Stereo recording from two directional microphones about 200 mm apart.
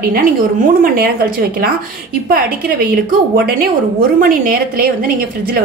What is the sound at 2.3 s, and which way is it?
Speech, 45° right (ahead or behind).